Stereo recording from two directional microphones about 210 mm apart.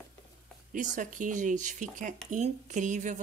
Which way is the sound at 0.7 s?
40° right (ahead or behind).